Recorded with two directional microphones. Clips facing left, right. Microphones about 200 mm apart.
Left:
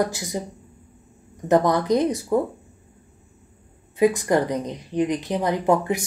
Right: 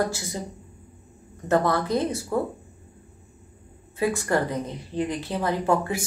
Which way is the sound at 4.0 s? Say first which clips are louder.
Left 5 dB; 15° left (ahead or behind).